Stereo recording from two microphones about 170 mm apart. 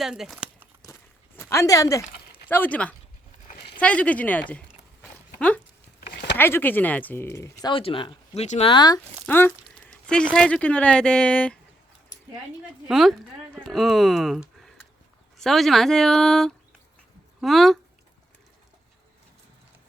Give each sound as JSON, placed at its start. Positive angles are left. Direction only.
{"t": 0.0, "sound": "crumpling", "side_deg": 0}
{"t": 1.4, "sound": "speech", "side_deg": 15}
{"t": 6.3, "sound": "speech", "side_deg": 10}
{"t": 7.7, "sound": "speech", "side_deg": 30}
{"t": 8.7, "sound": "speech", "side_deg": 25}
{"t": 9.2, "sound": "speech", "side_deg": 10}
{"t": 9.6, "sound": "a sound", "side_deg": 5}
{"t": 10.3, "sound": "speech", "side_deg": 5}
{"t": 12.9, "sound": "speech", "side_deg": 0}